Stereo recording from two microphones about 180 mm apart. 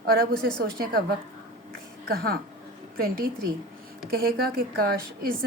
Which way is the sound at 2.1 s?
55° right (ahead or behind).